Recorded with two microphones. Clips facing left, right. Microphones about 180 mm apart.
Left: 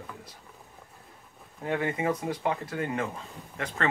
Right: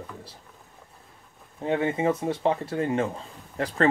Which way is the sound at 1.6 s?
25° right (ahead or behind).